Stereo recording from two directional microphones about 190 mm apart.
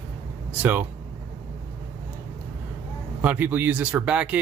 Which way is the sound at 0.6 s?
10° right (ahead or behind).